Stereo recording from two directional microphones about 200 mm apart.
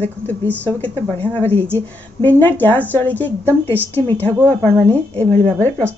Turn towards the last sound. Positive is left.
turn(degrees=5)  # may be behind; listen again after turning